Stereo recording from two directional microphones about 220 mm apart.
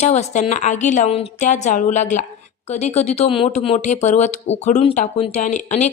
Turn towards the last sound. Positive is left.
turn(degrees=30)  # may be behind; listen again after turning